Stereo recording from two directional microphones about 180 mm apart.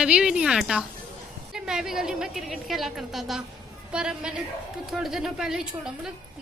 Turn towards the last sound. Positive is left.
turn(degrees=-5)  # may be behind; listen again after turning